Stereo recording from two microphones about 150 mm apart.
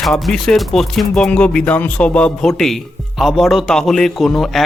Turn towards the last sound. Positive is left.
turn(degrees=0)  # may be behind; listen again after turning